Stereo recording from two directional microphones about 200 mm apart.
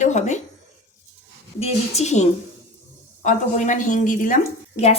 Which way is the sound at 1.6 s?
30° left (ahead or behind).